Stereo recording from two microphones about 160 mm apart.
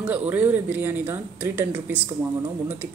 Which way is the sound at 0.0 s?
10° right (ahead or behind).